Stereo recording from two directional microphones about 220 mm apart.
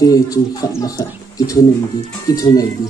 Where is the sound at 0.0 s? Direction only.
15° left (ahead or behind).